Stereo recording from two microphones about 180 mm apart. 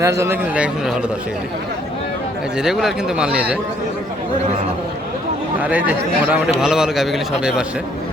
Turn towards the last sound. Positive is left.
turn(degrees=-5)  # may be behind; listen again after turning